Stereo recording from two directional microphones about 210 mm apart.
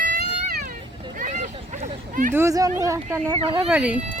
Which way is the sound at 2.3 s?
15° right (ahead or behind).